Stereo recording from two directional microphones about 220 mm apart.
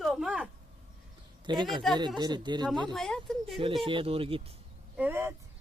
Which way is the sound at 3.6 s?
25° right (ahead or behind).